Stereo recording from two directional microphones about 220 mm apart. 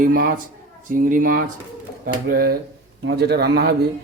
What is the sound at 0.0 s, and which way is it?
Speech, 40° right (ahead or behind).